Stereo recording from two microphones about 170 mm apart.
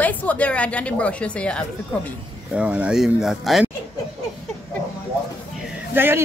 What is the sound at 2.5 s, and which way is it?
Speech, 5° right (ahead or behind).